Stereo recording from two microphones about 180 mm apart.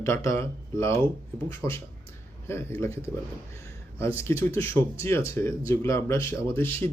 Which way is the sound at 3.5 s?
15° left (ahead or behind).